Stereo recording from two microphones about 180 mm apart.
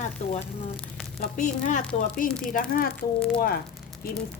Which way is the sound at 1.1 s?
45° left (ahead or behind).